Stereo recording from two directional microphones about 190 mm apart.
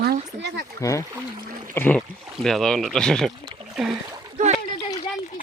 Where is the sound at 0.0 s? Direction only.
60° right (ahead or behind).